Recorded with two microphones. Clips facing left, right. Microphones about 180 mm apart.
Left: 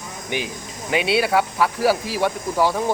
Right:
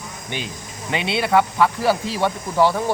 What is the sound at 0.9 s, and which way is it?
Speech, 5° left (ahead or behind).